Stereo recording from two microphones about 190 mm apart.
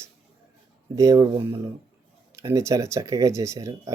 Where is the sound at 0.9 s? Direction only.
20° right (ahead or behind).